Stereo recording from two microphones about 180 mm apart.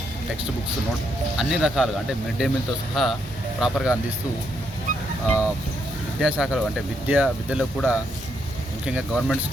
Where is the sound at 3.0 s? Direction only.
Centre (ahead or behind).